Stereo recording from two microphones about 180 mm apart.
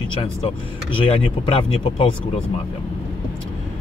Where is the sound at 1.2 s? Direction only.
30° left (ahead or behind).